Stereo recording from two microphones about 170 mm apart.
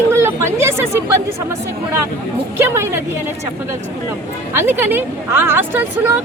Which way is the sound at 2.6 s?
15° right (ahead or behind).